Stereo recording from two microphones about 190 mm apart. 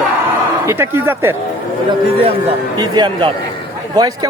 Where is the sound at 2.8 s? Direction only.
20° right (ahead or behind).